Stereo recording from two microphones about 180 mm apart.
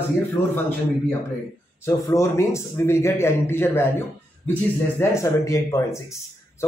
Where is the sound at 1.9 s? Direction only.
15° left (ahead or behind).